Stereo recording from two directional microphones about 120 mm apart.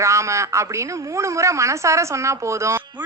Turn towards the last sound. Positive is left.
turn(degrees=-25)  # may be behind; listen again after turning